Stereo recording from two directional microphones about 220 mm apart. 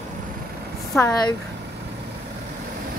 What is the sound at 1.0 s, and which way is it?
Speech, 10° left (ahead or behind).